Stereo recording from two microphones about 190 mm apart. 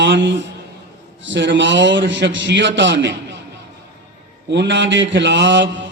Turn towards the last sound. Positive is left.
turn(degrees=-70)  # may be behind; listen again after turning